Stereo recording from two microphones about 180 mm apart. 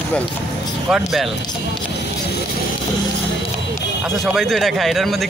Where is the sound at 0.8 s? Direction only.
Centre (ahead or behind).